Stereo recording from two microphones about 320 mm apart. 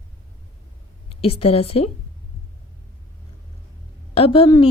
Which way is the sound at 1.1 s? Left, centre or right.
Centre.